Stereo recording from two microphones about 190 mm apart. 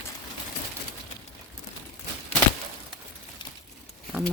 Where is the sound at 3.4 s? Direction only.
25° left (ahead or behind).